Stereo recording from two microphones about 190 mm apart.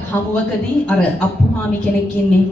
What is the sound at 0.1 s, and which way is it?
Speech, 15° left (ahead or behind).